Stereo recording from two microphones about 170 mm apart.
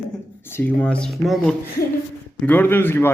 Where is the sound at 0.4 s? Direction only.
10° left (ahead or behind).